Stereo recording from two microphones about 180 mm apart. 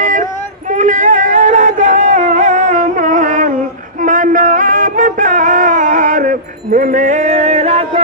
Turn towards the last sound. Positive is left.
turn(degrees=-35)  # may be behind; listen again after turning